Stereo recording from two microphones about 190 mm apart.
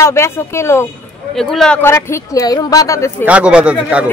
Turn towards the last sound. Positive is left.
turn(degrees=-5)  # may be behind; listen again after turning